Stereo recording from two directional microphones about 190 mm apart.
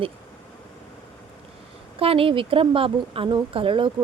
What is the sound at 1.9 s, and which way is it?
A woman's voice, 30° right (ahead or behind).